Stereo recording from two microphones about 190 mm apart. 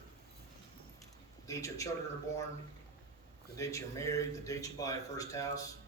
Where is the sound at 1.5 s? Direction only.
15° left (ahead or behind).